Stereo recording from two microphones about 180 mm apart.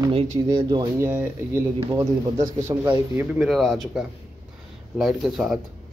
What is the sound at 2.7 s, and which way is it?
Speech, 10° right (ahead or behind).